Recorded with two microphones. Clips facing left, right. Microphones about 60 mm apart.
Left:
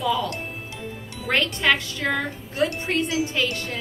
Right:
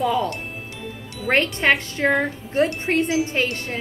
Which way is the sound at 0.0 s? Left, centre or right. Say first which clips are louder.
Right 3 dB; right.